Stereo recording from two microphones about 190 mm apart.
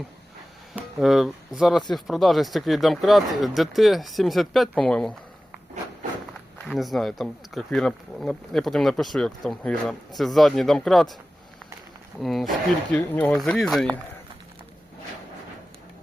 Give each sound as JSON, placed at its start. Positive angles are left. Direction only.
{"t": 0.7, "sound": "speech", "side_deg": 0}
{"t": 6.7, "sound": "speech", "side_deg": 0}
{"t": 12.2, "sound": "speech", "side_deg": 0}